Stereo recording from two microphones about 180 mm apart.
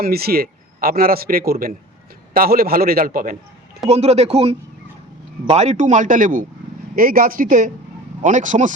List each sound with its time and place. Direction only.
0.0 s a man's voice: 60° right (ahead or behind)
3.8 s a man's voice: 35° right (ahead or behind)